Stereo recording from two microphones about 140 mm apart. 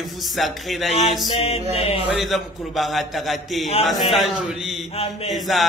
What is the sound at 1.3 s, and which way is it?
Mantra, 45° left (ahead or behind).